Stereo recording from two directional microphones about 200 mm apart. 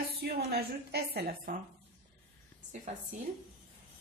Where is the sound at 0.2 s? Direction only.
55° right (ahead or behind).